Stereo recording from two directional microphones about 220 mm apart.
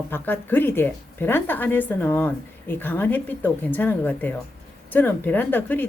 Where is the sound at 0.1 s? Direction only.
10° left (ahead or behind).